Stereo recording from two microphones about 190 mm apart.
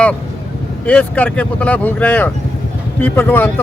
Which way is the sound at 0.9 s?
10° left (ahead or behind).